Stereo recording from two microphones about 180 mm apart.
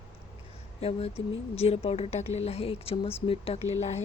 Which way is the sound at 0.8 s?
35° left (ahead or behind).